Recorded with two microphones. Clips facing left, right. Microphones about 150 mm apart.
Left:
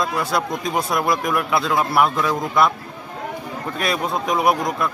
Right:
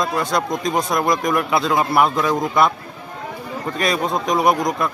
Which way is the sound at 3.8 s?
5° left (ahead or behind).